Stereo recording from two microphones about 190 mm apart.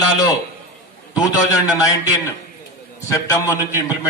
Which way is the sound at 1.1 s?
20° left (ahead or behind).